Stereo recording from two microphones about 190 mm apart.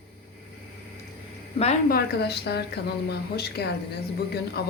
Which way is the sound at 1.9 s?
55° left (ahead or behind).